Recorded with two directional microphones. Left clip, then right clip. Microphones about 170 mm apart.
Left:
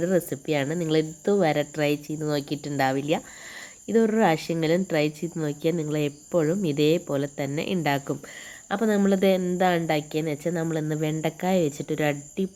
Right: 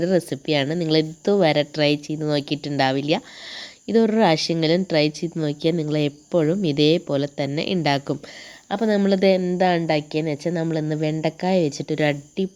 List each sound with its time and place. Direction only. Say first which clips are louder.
0.0 s a woman's voice: right 3 dB; 30° right (ahead or behind)